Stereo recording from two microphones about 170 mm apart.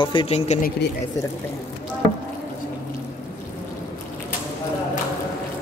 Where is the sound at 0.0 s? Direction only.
30° left (ahead or behind).